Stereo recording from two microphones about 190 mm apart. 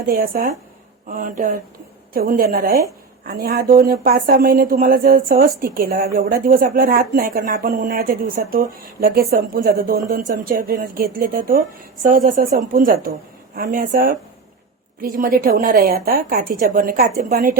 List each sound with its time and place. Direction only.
0.0 s speech: 50° right (ahead or behind)